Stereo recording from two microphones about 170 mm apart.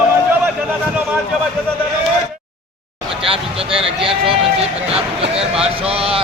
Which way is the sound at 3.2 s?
35° right (ahead or behind).